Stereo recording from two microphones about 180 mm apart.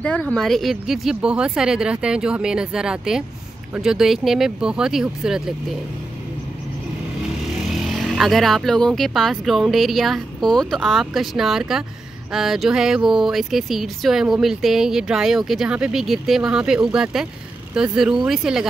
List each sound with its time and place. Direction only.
0.0 s speech: 5° left (ahead or behind)
7.7 s speech: centre (ahead or behind)